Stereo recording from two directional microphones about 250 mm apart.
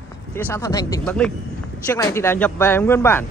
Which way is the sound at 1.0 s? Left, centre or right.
Centre.